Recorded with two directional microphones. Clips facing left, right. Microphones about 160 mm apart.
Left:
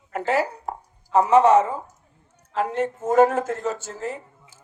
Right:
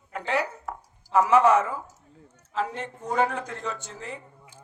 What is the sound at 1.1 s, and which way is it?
Speech, 30° left (ahead or behind).